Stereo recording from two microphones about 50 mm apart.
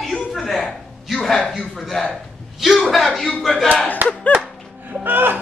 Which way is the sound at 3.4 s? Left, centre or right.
Centre.